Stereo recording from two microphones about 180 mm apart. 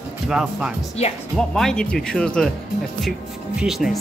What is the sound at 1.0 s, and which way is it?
Speech, 35° left (ahead or behind).